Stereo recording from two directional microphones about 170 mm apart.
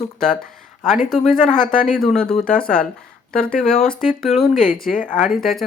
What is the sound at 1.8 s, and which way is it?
Speech, centre (ahead or behind).